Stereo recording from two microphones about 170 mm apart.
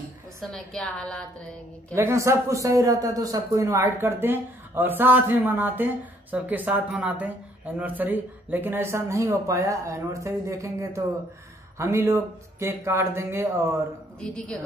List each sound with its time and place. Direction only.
0.4 s a woman's voice: 5° left (ahead or behind)
2.0 s speech: 15° right (ahead or behind)
14.2 s a woman's voice: 5° left (ahead or behind)